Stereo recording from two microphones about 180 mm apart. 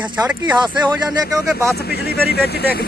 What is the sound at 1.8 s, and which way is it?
Speech, 60° left (ahead or behind).